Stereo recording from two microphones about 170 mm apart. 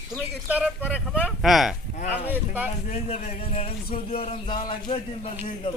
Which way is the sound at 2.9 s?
40° left (ahead or behind).